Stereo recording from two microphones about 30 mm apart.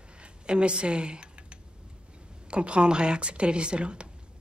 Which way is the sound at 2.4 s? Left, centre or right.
Right.